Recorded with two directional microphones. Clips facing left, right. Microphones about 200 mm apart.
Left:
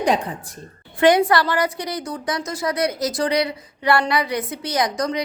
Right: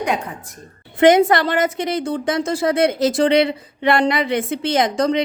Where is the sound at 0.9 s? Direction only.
20° right (ahead or behind).